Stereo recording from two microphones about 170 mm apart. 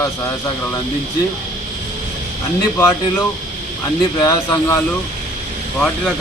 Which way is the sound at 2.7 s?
15° left (ahead or behind).